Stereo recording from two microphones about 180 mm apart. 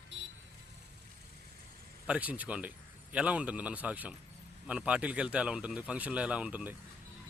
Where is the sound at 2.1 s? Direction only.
10° right (ahead or behind).